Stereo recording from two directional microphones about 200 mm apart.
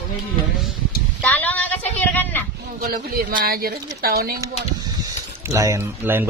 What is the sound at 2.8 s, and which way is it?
Speech, 45° right (ahead or behind).